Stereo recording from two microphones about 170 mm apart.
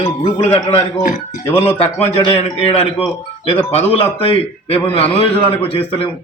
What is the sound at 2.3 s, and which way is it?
A man's voice, 35° left (ahead or behind).